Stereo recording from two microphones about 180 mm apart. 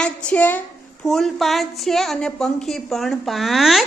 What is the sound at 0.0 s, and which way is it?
A woman's voice, 5° left (ahead or behind).